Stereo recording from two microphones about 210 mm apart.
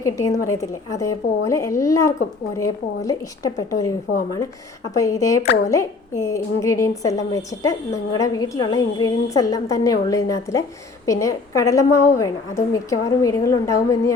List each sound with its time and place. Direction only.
0.0 s a woman's voice: 15° left (ahead or behind)
4.9 s a woman's voice: 15° left (ahead or behind)